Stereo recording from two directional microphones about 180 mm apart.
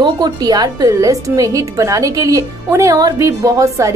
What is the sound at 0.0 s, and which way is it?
A woman's voice, 20° right (ahead or behind).